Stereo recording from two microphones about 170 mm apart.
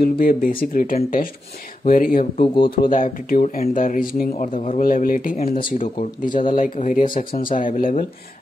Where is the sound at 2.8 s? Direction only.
55° left (ahead or behind).